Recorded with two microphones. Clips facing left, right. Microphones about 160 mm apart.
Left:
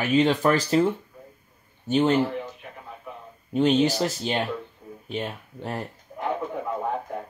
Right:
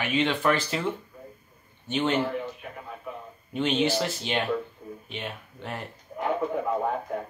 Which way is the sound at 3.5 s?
40° left (ahead or behind).